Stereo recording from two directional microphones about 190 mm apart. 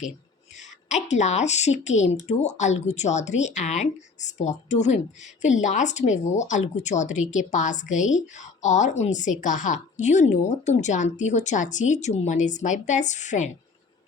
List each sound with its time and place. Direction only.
0.5 s a woman's voice: 40° left (ahead or behind)